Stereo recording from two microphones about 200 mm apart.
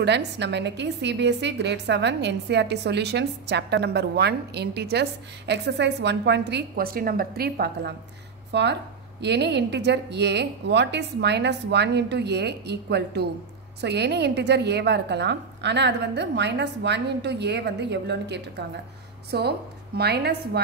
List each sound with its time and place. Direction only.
0.0 s a woman's voice: 60° right (ahead or behind)